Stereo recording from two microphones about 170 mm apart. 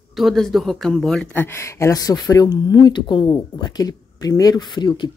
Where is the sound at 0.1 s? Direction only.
Centre (ahead or behind).